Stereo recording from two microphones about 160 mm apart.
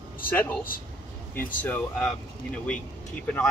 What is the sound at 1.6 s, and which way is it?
Speech, 5° left (ahead or behind).